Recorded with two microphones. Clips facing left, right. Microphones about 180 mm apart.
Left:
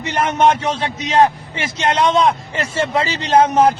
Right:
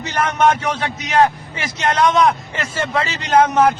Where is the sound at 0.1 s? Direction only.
25° left (ahead or behind).